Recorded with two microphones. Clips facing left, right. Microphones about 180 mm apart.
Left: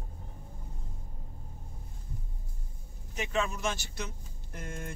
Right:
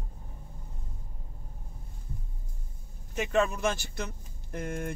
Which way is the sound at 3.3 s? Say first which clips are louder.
Right 5 dB; 55° right (ahead or behind).